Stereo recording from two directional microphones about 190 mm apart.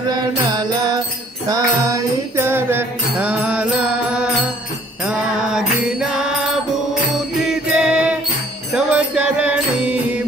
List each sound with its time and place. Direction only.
0.1 s mantra: 20° right (ahead or behind)
1.5 s music: 15° right (ahead or behind)
5.0 s mantra: 5° right (ahead or behind)
7.4 s mantra: 5° right (ahead or behind)
8.7 s music: 5° right (ahead or behind)